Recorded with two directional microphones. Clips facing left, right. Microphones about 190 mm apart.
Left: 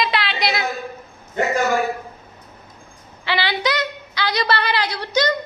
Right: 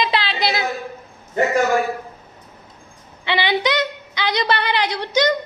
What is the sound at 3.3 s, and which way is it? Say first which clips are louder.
A woman's voice: right 2 dB; 20° right (ahead or behind).